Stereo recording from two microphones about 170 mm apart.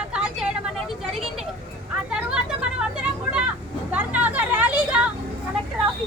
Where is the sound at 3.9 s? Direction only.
10° right (ahead or behind).